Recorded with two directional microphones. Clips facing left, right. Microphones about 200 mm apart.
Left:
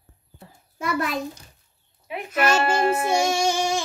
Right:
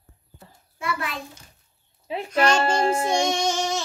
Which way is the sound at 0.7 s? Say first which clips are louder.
Left 5 dB; 40° left (ahead or behind).